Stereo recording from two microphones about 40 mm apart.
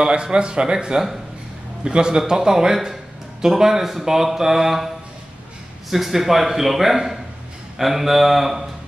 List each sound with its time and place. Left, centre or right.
0.0 s a man's voice: right; by 8.6 s centre